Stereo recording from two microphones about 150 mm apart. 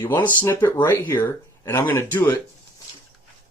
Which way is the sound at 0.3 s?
15° left (ahead or behind).